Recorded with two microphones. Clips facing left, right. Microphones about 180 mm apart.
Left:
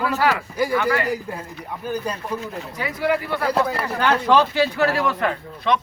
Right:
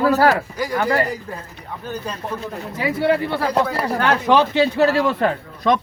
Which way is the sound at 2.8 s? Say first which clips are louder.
Right 4 dB; 25° right (ahead or behind).